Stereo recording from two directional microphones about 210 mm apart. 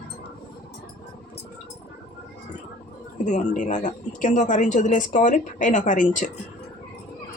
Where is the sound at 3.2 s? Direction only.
35° left (ahead or behind).